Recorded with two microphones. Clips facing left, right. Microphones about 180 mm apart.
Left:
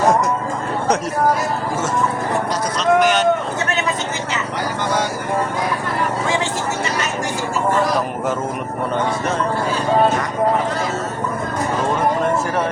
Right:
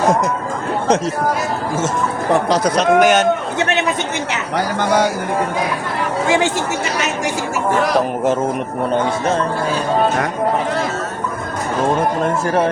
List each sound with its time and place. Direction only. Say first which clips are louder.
2.3 s speech: right 6 dB; 70° right (ahead or behind); by 3.2 s 50° right (ahead or behind)
6.2 s speech: right 9 dB; 75° right (ahead or behind)